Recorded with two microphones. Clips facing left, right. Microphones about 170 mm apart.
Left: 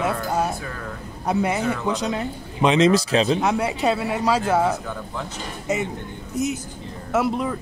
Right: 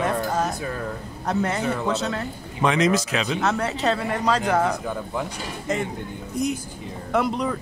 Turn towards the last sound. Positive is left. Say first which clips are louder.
# left 1 dB
turn(degrees=5)  # may be behind; listen again after turning